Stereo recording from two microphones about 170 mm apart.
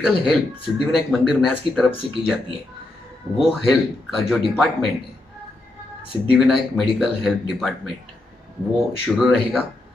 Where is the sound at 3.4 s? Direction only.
Centre (ahead or behind).